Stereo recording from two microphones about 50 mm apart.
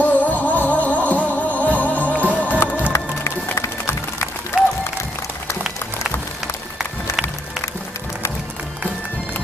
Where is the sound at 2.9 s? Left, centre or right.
Left.